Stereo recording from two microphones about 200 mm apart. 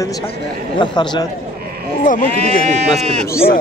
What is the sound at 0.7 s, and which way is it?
Speech, 20° left (ahead or behind).